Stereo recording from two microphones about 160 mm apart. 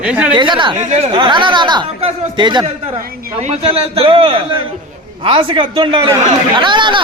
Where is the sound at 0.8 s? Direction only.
45° right (ahead or behind).